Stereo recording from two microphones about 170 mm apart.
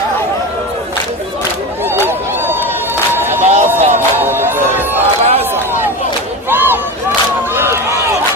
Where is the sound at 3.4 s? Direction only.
40° right (ahead or behind).